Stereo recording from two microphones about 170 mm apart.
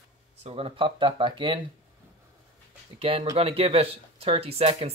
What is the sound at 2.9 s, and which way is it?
Speech, 35° right (ahead or behind).